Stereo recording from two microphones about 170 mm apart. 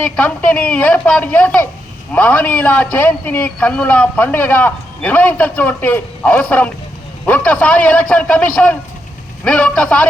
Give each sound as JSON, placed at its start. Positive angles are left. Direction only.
{"t": 0.0, "sound": "a man's voice", "side_deg": 5}